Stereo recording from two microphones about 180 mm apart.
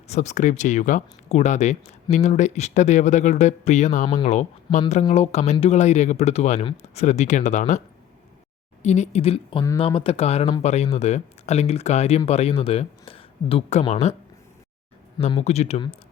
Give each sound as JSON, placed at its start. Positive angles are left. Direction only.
{"t": 0.1, "sound": "speech", "side_deg": 40}
{"t": 4.0, "sound": "speech", "side_deg": 25}
{"t": 4.3, "sound": "speech", "side_deg": 40}
{"t": 8.8, "sound": "speech", "side_deg": 40}
{"t": 15.2, "sound": "speech", "side_deg": 35}